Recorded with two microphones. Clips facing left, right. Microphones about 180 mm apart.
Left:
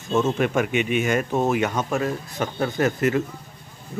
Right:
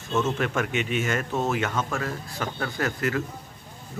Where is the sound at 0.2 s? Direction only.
15° left (ahead or behind).